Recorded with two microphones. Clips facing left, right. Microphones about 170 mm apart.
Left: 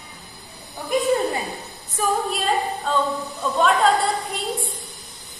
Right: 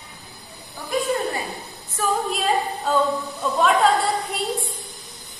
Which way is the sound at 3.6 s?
Centre (ahead or behind).